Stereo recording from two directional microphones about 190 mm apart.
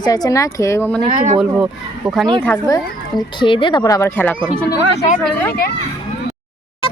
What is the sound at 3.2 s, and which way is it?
Speech, 25° left (ahead or behind).